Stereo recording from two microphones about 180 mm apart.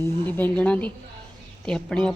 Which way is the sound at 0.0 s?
10° left (ahead or behind).